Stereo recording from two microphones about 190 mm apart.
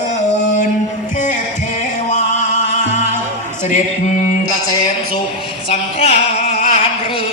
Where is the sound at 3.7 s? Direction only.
40° left (ahead or behind).